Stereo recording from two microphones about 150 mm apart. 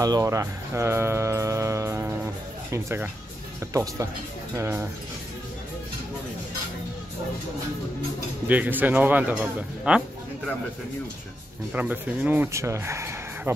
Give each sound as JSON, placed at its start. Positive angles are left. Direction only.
{"t": 0.0, "sound": "speech", "side_deg": -20}
{"t": 8.5, "sound": "speech", "side_deg": -10}
{"t": 11.7, "sound": "speech", "side_deg": -10}